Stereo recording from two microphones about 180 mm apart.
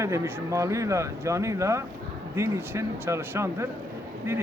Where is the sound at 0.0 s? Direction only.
15° right (ahead or behind).